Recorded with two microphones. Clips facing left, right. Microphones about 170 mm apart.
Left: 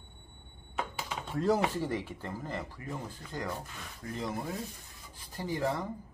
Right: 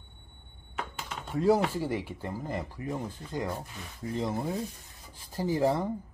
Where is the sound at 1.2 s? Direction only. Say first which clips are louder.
Right 4 dB; 5° right (ahead or behind); by 5.9 s 30° right (ahead or behind).